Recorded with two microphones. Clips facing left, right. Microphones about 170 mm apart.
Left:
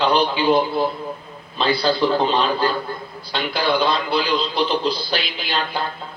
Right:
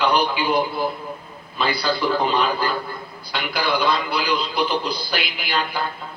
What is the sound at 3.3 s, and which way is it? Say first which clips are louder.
A man's voice: left 3 dB; 25° left (ahead or behind).